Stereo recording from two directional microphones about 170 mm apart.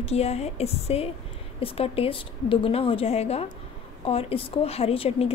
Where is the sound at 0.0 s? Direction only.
40° left (ahead or behind).